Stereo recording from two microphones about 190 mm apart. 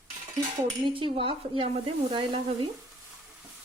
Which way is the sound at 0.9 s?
25° right (ahead or behind).